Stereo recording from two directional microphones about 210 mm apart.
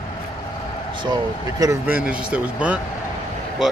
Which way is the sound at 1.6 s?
10° right (ahead or behind).